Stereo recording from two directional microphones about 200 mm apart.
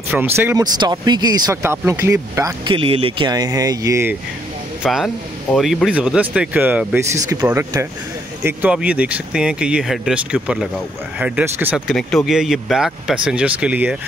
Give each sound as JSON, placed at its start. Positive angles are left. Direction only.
{"t": 0.1, "sound": "speech", "side_deg": -10}
{"t": 0.7, "sound": "speech", "side_deg": -20}
{"t": 4.8, "sound": "speech", "side_deg": 0}